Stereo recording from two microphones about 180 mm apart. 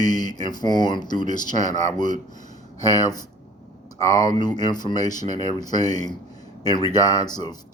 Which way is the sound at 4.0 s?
20° left (ahead or behind).